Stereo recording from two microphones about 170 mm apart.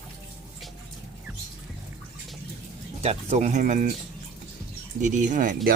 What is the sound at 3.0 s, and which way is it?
Speech, 40° right (ahead or behind).